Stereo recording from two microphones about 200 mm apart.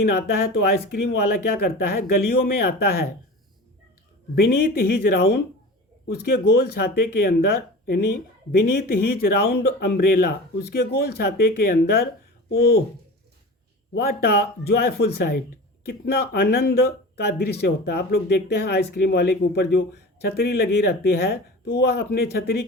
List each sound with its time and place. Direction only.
0.2 s speech: 50° left (ahead or behind)
4.7 s speech: 50° left (ahead or behind)
8.5 s speech: 50° left (ahead or behind)
13.9 s speech: 50° left (ahead or behind)